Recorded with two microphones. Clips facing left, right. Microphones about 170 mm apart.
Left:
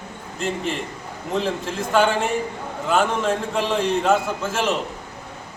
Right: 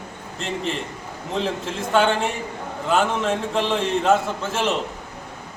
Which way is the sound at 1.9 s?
Centre (ahead or behind).